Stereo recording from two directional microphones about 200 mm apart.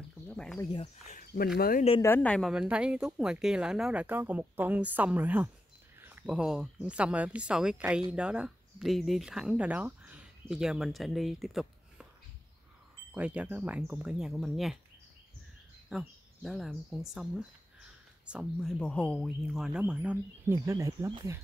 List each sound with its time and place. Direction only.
0.3 s a sound: 5° left (ahead or behind)
0.6 s speech: 25° left (ahead or behind)
1.0 s speech: 45° left (ahead or behind)
2.0 s a woman's voice: 10° left (ahead or behind)
13.1 s speech: 5° right (ahead or behind)
15.9 s a woman's voice: centre (ahead or behind); by 21.4 s 15° right (ahead or behind)